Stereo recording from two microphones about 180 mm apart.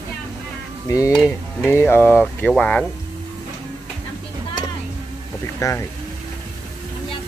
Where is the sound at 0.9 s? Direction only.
15° left (ahead or behind).